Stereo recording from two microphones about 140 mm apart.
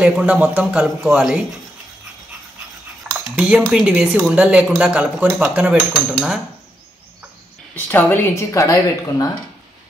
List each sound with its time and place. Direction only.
0.0 s speech: 5° right (ahead or behind)
3.1 s speech: 10° right (ahead or behind)
7.7 s speech: 15° left (ahead or behind)